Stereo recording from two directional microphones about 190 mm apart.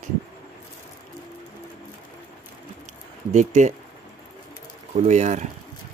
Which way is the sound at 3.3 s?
40° right (ahead or behind).